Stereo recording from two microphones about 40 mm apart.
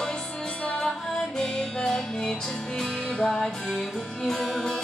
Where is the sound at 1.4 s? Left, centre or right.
Centre.